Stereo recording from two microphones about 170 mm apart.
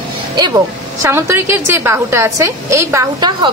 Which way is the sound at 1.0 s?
15° right (ahead or behind).